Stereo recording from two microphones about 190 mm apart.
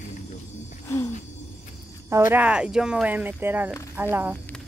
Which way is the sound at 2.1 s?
10° right (ahead or behind).